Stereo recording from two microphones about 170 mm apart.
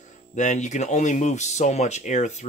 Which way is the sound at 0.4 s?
45° left (ahead or behind).